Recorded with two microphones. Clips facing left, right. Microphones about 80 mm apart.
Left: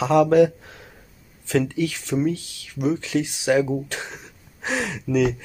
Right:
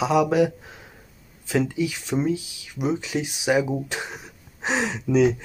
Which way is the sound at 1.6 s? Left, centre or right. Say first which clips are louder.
Right 1 dB; centre.